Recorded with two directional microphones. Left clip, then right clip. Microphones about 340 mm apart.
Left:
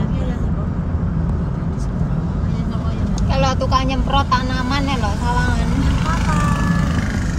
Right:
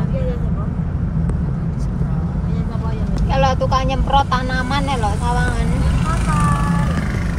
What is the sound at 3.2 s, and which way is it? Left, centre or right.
Vehicle, centre.